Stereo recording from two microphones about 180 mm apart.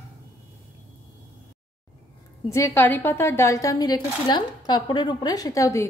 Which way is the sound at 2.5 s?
15° left (ahead or behind).